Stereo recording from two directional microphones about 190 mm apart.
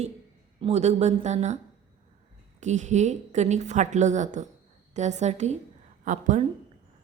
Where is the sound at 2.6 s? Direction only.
40° right (ahead or behind).